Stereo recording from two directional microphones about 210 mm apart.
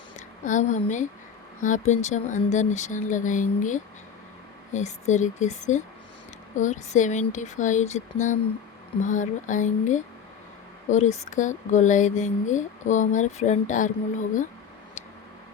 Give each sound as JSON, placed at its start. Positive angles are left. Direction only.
{"t": 0.4, "sound": "speech", "side_deg": 35}